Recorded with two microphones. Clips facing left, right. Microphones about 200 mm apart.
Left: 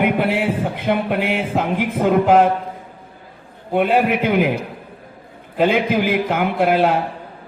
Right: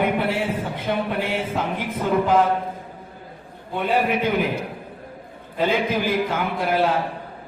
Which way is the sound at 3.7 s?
70° left (ahead or behind).